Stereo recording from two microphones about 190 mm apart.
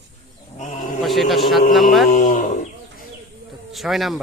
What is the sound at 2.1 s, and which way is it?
Speech, 40° left (ahead or behind).